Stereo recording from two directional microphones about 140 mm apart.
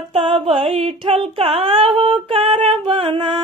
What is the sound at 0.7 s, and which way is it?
Female singing, 45° right (ahead or behind).